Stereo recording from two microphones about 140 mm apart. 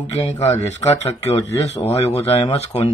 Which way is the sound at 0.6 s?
50° left (ahead or behind).